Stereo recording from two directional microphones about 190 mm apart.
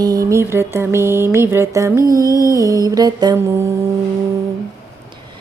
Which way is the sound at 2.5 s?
15° right (ahead or behind).